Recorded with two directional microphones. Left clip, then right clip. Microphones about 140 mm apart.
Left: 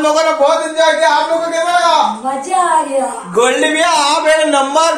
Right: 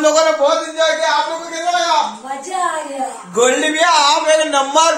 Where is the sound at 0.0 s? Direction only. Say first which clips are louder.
Even; 15° right (ahead or behind).